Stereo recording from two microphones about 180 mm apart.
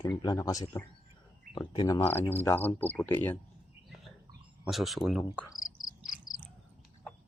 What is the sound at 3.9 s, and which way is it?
Bird, centre (ahead or behind).